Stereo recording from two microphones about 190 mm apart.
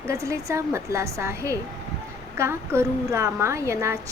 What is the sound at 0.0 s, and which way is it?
A woman's voice, 15° right (ahead or behind).